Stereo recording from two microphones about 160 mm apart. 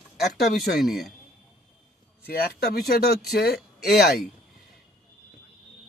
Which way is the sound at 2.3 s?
80° left.